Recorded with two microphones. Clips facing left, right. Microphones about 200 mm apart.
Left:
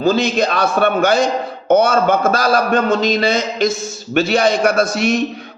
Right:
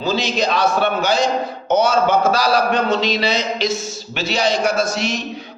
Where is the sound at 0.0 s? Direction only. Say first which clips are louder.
Left 5 dB; 55° left (ahead or behind).